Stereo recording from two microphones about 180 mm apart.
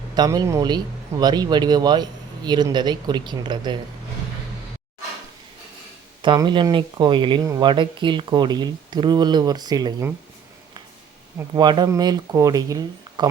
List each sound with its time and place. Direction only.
0.1 s speech: 20° right (ahead or behind)
6.2 s speech: 25° right (ahead or behind)
11.3 s speech: 25° right (ahead or behind)